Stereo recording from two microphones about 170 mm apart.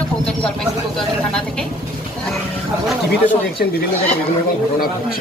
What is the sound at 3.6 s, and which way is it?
Speech, 60° left (ahead or behind).